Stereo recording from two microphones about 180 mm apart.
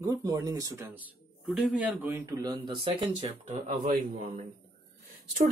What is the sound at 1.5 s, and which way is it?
Speech, 5° right (ahead or behind).